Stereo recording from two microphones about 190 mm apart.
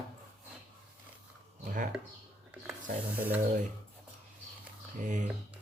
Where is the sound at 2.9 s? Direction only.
45° right (ahead or behind).